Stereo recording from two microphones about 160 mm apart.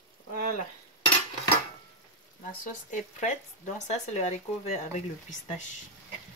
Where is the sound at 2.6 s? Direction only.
50° left (ahead or behind).